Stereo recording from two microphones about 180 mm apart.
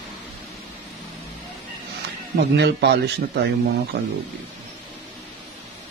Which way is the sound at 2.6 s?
70° right (ahead or behind).